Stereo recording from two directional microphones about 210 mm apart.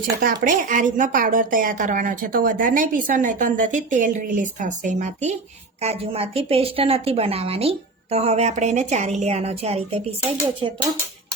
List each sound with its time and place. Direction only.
0.4 s a woman's voice: 40° right (ahead or behind)